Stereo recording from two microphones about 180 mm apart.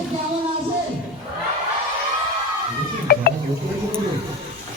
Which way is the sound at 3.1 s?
55° left (ahead or behind).